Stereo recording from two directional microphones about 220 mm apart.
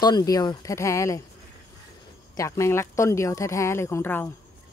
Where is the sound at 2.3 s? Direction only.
15° left (ahead or behind).